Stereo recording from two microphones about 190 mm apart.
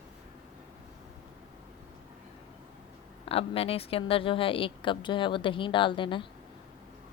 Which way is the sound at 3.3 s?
30° left (ahead or behind).